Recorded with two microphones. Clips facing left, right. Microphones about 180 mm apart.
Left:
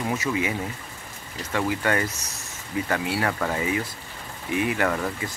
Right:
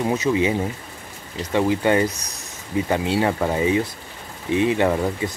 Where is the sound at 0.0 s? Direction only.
20° right (ahead or behind).